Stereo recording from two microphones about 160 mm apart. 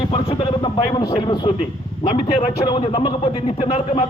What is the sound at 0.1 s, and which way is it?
A man's voice, 35° left (ahead or behind).